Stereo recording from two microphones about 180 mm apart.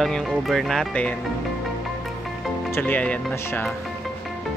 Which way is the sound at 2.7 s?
10° left (ahead or behind).